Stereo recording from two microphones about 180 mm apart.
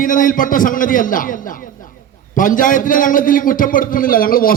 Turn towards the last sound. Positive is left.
turn(degrees=55)  # may be behind; listen again after turning